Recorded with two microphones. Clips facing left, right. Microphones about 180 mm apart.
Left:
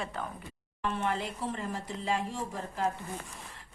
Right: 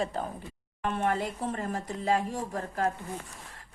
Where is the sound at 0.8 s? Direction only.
55° right (ahead or behind).